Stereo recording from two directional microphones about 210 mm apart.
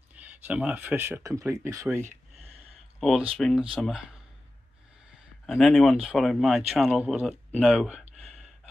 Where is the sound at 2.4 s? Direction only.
30° right (ahead or behind).